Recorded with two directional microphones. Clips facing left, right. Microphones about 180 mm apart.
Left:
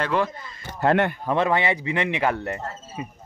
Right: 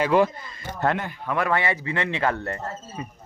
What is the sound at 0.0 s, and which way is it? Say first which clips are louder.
Speech: right 4 dB; 10° right (ahead or behind).